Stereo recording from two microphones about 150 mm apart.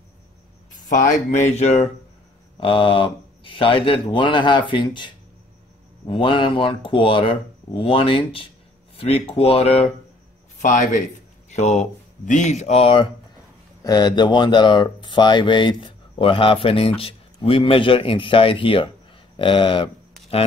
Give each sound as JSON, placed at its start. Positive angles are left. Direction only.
{"t": 0.8, "sound": "speech", "side_deg": 50}
{"t": 10.6, "sound": "speech", "side_deg": 55}